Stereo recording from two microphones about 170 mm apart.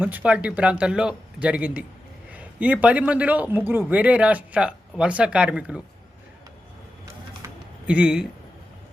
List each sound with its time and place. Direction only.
0.0 s a man's voice: 10° right (ahead or behind)
7.4 s typing: 20° right (ahead or behind)
7.9 s a man's voice: 5° right (ahead or behind)